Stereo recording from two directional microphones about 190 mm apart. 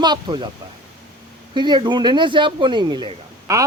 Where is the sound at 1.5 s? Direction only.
25° right (ahead or behind).